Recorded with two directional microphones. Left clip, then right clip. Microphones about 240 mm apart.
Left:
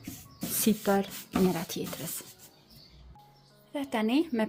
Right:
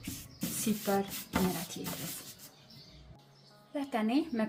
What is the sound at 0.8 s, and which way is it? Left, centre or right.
Speech, left.